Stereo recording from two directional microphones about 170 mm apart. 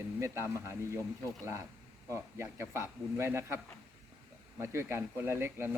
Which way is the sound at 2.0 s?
15° right (ahead or behind).